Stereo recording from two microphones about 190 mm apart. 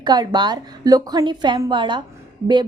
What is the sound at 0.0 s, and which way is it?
Speech, 20° right (ahead or behind).